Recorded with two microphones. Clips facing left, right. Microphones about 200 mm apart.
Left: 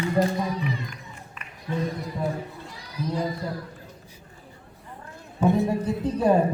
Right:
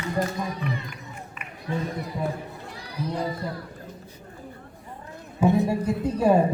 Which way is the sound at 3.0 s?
60° right (ahead or behind).